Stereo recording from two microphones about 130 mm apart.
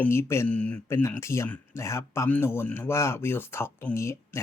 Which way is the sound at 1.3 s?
20° left (ahead or behind).